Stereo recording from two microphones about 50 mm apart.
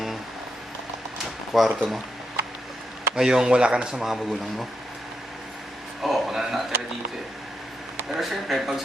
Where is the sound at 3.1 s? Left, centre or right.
Centre.